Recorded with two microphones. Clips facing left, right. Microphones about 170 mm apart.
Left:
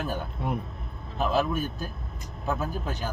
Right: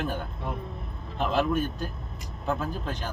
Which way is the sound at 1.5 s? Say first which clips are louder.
Right 3 dB; 5° left (ahead or behind).